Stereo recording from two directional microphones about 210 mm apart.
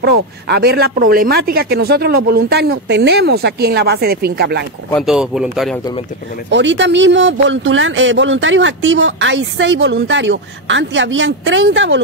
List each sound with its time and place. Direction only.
0.0 s speech: 50° right (ahead or behind)
4.9 s speech: 5° right (ahead or behind)
6.5 s speech: 60° right (ahead or behind)